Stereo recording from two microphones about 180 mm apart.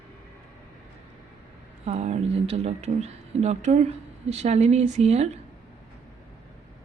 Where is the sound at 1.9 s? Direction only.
40° right (ahead or behind).